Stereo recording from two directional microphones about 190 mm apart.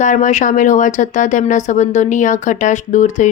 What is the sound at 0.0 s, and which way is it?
Speech, 40° left (ahead or behind).